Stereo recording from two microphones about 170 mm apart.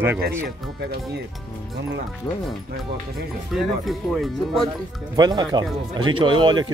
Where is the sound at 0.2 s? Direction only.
70° right (ahead or behind).